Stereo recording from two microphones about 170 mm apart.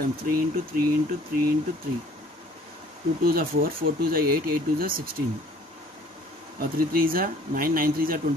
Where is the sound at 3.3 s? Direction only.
60° right (ahead or behind).